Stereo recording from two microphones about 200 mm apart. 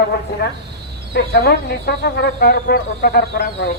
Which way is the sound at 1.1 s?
55° left (ahead or behind).